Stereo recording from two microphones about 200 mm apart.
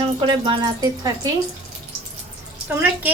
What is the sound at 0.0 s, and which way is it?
Speech, 25° right (ahead or behind).